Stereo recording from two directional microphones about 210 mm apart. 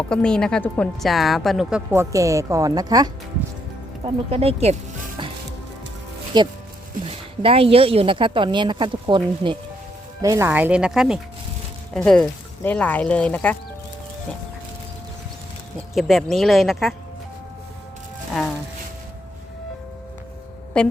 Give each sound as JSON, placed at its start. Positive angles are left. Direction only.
{"t": 0.1, "sound": "a woman's voice", "side_deg": 5}
{"t": 1.9, "sound": "speech", "side_deg": -15}
{"t": 4.0, "sound": "a woman's voice", "side_deg": -30}
{"t": 6.3, "sound": "a woman's voice", "side_deg": -20}
{"t": 16.0, "sound": "a woman's voice", "side_deg": 0}
{"t": 20.7, "sound": "a woman's voice", "side_deg": 5}